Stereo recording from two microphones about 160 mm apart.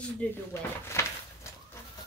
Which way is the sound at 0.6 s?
15° left (ahead or behind).